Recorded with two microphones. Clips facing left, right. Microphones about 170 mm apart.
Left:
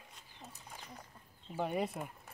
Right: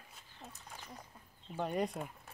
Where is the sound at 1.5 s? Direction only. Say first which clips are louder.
Even; 5° left (ahead or behind).